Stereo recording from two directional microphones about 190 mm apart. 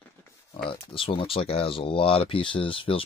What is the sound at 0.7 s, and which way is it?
Speech, 30° left (ahead or behind).